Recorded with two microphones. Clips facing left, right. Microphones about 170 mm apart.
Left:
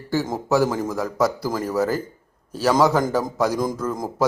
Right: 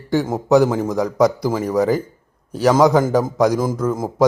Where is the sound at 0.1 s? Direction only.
15° right (ahead or behind).